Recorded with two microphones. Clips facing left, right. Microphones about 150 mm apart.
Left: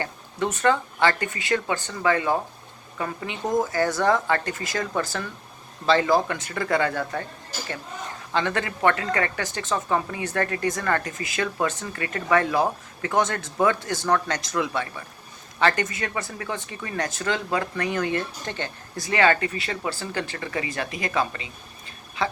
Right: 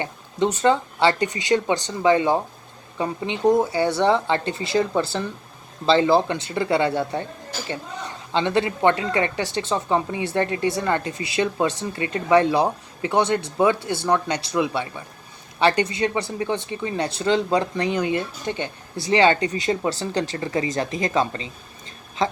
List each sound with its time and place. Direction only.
0.0 s speech: 20° right (ahead or behind)
8.3 s speech: 20° right (ahead or behind)